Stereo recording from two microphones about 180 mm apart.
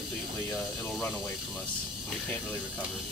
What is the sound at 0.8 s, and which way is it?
Speech, centre (ahead or behind).